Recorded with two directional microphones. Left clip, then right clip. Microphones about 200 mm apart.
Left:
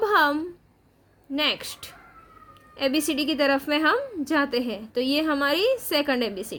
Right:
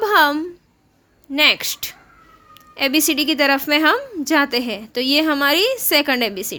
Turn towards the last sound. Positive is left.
turn(degrees=-15)  # may be behind; listen again after turning